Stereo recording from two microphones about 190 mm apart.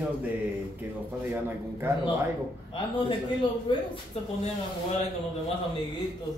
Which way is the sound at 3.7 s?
25° left (ahead or behind).